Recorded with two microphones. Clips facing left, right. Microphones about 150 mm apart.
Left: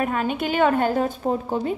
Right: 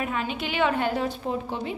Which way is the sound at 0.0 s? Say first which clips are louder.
Left 5 dB; 45° left (ahead or behind).